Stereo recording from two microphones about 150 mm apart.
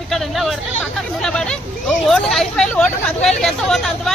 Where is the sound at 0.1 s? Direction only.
Centre (ahead or behind).